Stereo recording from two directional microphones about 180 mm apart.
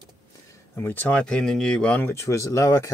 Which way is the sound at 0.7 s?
10° left (ahead or behind).